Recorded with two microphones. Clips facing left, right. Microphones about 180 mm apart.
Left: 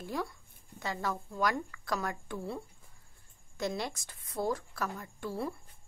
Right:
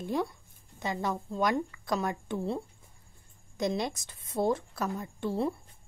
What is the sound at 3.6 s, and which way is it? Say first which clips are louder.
A woman's voice: right 4 dB; 20° right (ahead or behind).